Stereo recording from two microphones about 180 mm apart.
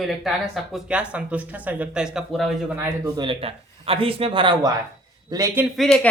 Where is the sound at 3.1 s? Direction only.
30° right (ahead or behind).